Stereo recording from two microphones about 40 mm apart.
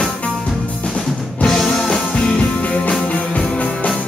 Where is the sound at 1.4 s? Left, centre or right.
Centre.